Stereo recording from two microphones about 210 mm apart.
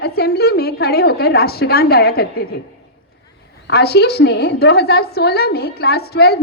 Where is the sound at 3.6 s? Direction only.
50° left (ahead or behind).